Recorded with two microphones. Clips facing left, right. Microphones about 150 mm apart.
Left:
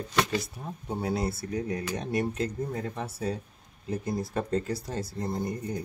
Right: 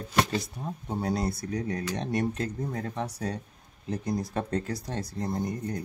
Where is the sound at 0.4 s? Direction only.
5° left (ahead or behind).